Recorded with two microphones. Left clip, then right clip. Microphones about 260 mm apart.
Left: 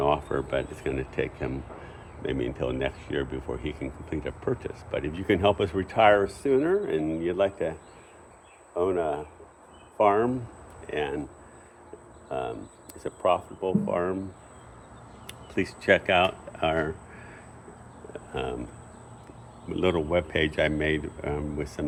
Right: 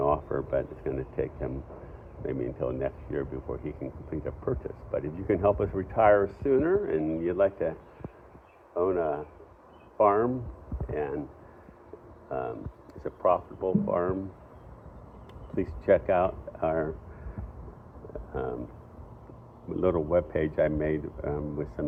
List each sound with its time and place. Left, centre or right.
0.0 s speech: left
12.3 s speech: left
16.0 s speech: left
19.8 s speech: left